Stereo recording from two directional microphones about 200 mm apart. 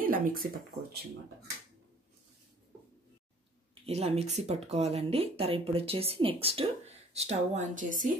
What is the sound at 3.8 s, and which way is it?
Speech, 30° right (ahead or behind).